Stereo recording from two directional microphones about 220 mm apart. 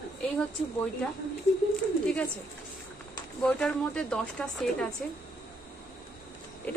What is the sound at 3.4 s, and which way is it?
A woman's voice, 5° left (ahead or behind).